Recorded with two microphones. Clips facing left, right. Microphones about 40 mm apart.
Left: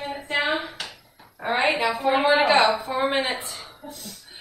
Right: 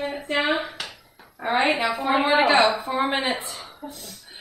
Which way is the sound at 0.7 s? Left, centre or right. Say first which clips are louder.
Right 1 dB; centre.